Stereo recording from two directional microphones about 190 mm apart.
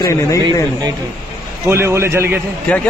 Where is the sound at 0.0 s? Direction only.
15° left (ahead or behind).